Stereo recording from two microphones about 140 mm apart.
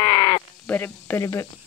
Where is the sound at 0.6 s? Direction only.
15° left (ahead or behind).